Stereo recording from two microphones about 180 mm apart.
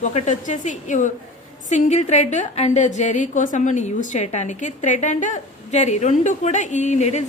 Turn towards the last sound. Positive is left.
turn(degrees=40)  # may be behind; listen again after turning